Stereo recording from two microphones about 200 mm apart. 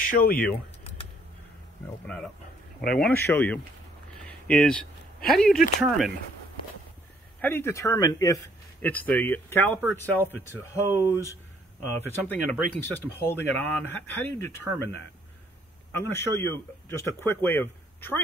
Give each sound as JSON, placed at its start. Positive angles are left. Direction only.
{"t": 0.0, "sound": "speech", "side_deg": 45}
{"t": 2.9, "sound": "speech", "side_deg": 5}
{"t": 4.2, "sound": "a sound", "side_deg": 5}
{"t": 5.8, "sound": "speech", "side_deg": 0}
{"t": 7.3, "sound": "speech", "side_deg": 10}